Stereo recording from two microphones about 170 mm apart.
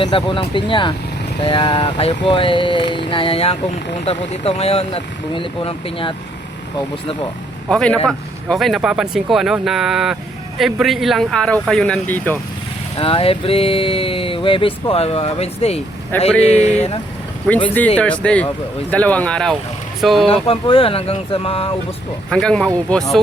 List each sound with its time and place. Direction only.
0.0 s speech: 30° left (ahead or behind)
7.7 s speech: 5° left (ahead or behind)
13.0 s speech: 30° left (ahead or behind)
16.1 s speech: 10° left (ahead or behind)
16.5 s speech: 40° left (ahead or behind)
17.7 s speech: 10° left (ahead or behind)
20.2 s speech: 35° left (ahead or behind)
22.3 s speech: 5° left (ahead or behind)